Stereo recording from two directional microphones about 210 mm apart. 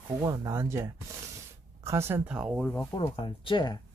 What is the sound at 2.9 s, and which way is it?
Speech, 25° left (ahead or behind).